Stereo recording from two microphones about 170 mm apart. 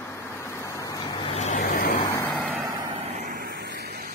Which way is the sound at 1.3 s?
40° left (ahead or behind).